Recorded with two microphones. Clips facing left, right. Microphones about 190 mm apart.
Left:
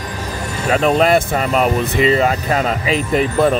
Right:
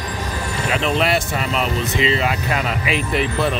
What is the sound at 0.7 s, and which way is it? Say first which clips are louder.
Speech: left 6 dB; 45° left (ahead or behind).